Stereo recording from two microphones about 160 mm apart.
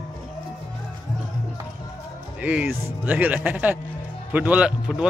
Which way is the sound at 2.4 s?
10° right (ahead or behind).